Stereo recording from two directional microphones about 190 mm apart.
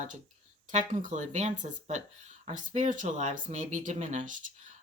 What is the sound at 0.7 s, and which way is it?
Speech, 40° right (ahead or behind).